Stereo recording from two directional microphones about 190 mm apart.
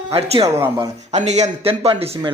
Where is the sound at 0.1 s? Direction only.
30° right (ahead or behind).